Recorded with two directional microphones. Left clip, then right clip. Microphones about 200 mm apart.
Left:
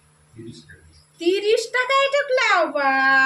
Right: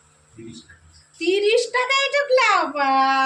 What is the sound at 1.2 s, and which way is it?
Speech, 10° left (ahead or behind).